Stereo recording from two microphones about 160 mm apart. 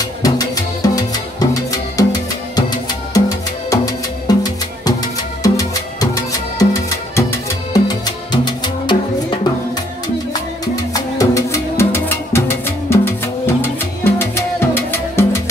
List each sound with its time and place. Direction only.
0.8 s music: 20° left (ahead or behind)
3.1 s music: 20° left (ahead or behind)
10.6 s music: 20° left (ahead or behind)